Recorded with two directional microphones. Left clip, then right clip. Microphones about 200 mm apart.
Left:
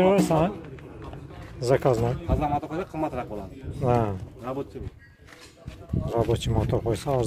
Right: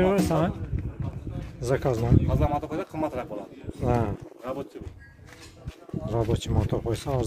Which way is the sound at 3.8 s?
5° left (ahead or behind).